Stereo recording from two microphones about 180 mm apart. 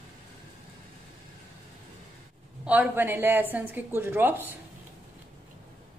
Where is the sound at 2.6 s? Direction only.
10° right (ahead or behind).